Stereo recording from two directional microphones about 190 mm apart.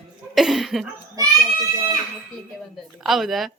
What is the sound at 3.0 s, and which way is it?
Speech, centre (ahead or behind).